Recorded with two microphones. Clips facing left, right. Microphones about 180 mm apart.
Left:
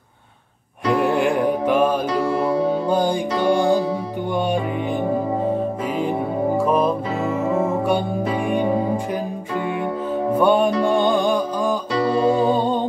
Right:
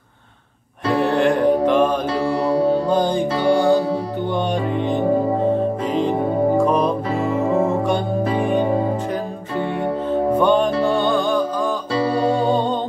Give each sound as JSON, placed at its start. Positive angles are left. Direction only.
{"t": 1.0, "sound": "music", "side_deg": 10}
{"t": 6.6, "sound": "music", "side_deg": 5}
{"t": 7.4, "sound": "music", "side_deg": -30}
{"t": 10.3, "sound": "music", "side_deg": 10}